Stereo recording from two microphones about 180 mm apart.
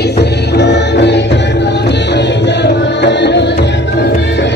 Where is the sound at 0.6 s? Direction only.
70° left (ahead or behind).